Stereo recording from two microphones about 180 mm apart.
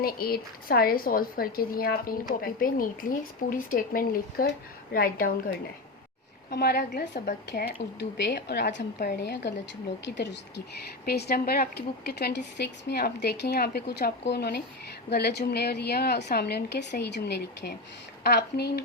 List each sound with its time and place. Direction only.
0.0 s a woman's voice: 55° left (ahead or behind)
6.5 s a woman's voice: 60° left (ahead or behind)
10.8 s speech: 65° left (ahead or behind)